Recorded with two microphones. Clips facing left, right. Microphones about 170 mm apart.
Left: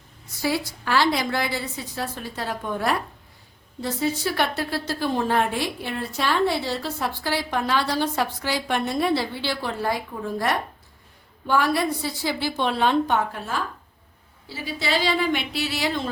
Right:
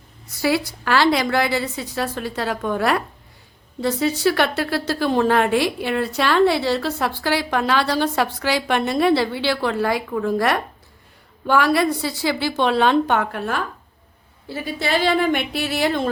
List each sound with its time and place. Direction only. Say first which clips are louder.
0.4 s a woman's voice: right 5 dB; 75° right (ahead or behind)
14.4 s a woman's voice: right 4 dB; 55° right (ahead or behind)